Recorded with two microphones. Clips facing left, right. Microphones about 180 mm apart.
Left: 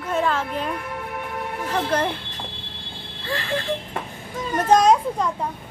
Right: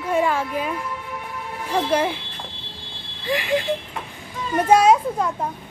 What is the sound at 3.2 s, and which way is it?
Speech, 15° right (ahead or behind).